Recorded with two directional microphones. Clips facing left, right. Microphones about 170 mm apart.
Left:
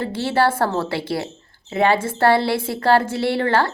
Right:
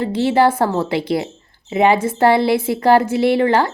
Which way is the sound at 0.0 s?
15° right (ahead or behind).